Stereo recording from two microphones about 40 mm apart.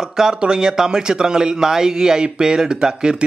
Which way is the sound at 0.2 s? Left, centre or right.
Centre.